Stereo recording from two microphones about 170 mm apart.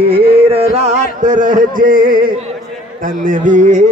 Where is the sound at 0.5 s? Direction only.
35° right (ahead or behind); by 2.3 s 55° right (ahead or behind).